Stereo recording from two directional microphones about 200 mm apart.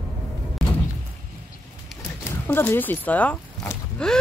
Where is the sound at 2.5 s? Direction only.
10° left (ahead or behind).